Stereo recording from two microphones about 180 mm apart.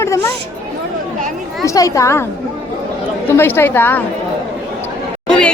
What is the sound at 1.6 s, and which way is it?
Speech, 20° left (ahead or behind).